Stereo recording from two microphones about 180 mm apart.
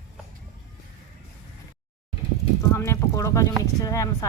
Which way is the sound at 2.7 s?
15° left (ahead or behind).